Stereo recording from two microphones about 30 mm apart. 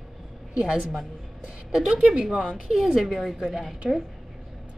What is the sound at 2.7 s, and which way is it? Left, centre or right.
Speech, centre.